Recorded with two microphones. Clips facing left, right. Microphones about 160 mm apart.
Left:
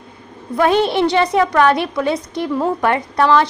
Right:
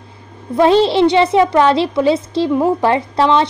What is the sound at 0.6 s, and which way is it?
A woman's voice, 25° right (ahead or behind).